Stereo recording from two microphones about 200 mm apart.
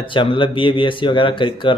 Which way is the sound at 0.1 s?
25° left (ahead or behind).